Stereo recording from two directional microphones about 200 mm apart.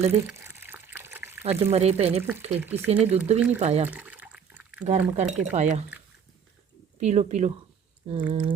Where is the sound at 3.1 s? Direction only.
30° right (ahead or behind).